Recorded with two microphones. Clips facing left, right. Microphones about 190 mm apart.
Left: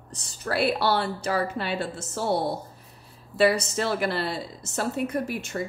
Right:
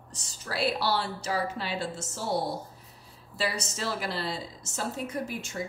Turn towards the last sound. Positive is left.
turn(degrees=60)  # may be behind; listen again after turning